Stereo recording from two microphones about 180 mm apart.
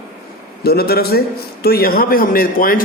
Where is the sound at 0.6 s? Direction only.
60° left (ahead or behind).